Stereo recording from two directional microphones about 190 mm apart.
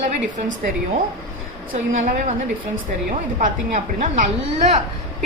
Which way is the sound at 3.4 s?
40° right (ahead or behind).